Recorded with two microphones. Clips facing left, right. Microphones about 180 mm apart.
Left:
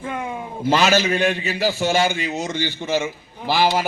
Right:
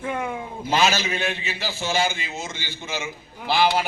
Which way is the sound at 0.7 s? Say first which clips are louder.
Left 5 dB; 45° left (ahead or behind).